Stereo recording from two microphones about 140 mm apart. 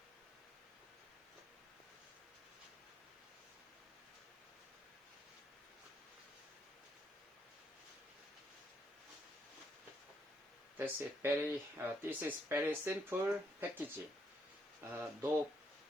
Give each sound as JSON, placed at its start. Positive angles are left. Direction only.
{"t": 10.8, "sound": "speech", "side_deg": -15}